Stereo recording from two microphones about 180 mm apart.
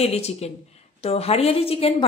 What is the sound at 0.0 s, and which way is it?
Speech, 35° left (ahead or behind).